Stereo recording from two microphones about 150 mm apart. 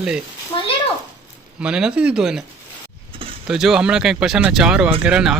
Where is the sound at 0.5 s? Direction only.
30° left (ahead or behind).